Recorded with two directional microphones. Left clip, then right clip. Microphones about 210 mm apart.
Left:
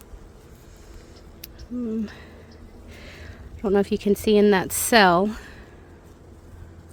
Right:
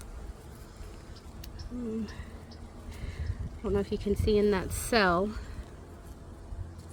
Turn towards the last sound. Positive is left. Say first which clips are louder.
# left 9 dB
turn(degrees=60)  # may be behind; listen again after turning